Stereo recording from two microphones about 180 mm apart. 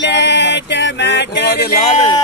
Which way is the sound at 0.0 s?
75° left (ahead or behind).